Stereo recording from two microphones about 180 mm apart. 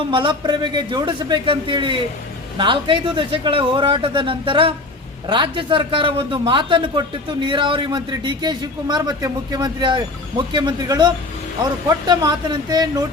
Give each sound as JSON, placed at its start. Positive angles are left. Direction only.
{"t": 0.1, "sound": "a man's voice", "side_deg": -25}